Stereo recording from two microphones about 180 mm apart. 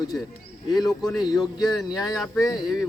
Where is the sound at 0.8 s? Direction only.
Centre (ahead or behind).